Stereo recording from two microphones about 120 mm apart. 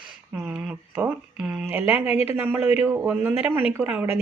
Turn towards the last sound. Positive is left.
turn(degrees=-15)  # may be behind; listen again after turning